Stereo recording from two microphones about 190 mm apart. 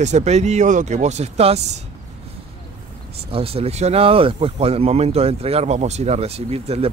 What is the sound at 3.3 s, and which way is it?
Speech, 30° right (ahead or behind).